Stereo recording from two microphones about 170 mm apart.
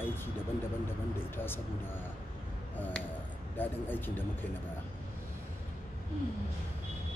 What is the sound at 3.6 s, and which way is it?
Speech, 10° left (ahead or behind).